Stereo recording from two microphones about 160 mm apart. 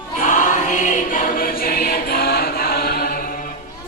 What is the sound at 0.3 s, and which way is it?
Choir, 50° left (ahead or behind).